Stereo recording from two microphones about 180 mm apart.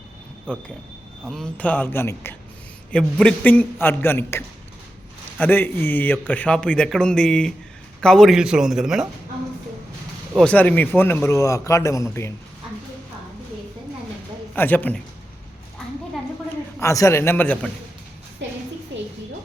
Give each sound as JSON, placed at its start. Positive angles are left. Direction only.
{"t": 0.5, "sound": "a man's voice", "side_deg": 5}
{"t": 10.3, "sound": "a man's voice", "side_deg": 5}
{"t": 14.5, "sound": "a man's voice", "side_deg": 10}
{"t": 16.8, "sound": "a man's voice", "side_deg": 15}
{"t": 18.4, "sound": "a sound", "side_deg": -80}